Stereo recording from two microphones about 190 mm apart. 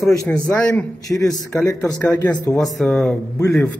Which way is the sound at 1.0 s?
20° left (ahead or behind).